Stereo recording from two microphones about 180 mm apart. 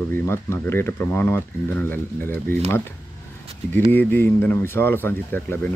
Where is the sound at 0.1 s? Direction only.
15° left (ahead or behind).